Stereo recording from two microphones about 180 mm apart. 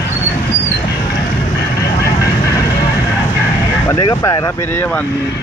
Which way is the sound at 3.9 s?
20° left (ahead or behind).